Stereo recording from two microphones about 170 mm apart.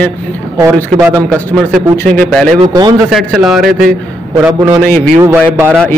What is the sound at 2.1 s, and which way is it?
Speech, 5° left (ahead or behind).